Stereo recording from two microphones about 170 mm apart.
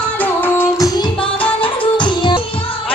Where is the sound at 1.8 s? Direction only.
30° left (ahead or behind).